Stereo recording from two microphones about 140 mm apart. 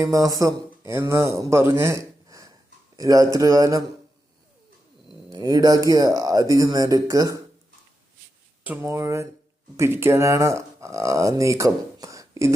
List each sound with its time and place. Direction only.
0.0 s speech: 25° right (ahead or behind)
5.3 s speech: 30° right (ahead or behind)
8.6 s speech: 15° right (ahead or behind)